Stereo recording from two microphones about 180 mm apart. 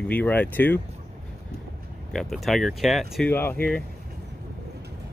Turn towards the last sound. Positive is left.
turn(degrees=5)  # may be behind; listen again after turning